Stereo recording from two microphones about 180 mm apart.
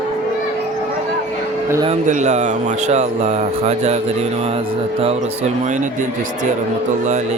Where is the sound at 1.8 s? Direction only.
40° right (ahead or behind).